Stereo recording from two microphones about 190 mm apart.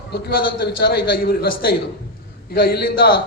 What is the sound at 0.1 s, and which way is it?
A man's voice, 60° left (ahead or behind).